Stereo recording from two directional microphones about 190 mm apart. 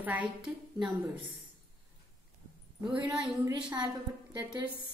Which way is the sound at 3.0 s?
Centre (ahead or behind).